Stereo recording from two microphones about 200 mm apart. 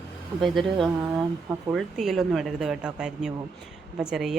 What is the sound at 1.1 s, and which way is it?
Speech, 15° right (ahead or behind).